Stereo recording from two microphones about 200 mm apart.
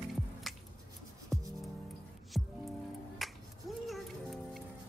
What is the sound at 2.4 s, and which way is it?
Music, centre (ahead or behind).